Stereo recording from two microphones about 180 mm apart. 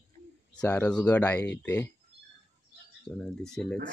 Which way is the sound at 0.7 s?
5° left (ahead or behind).